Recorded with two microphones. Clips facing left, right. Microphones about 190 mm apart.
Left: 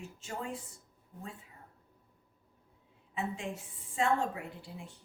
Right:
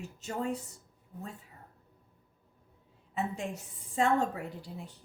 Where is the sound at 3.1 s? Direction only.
40° right (ahead or behind).